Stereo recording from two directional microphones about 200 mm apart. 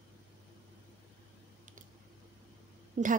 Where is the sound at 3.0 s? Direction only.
35° right (ahead or behind).